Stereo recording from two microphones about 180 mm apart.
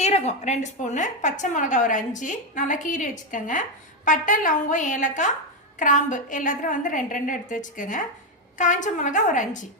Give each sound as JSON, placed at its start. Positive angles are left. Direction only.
{"t": 0.0, "sound": "a woman's voice", "side_deg": 35}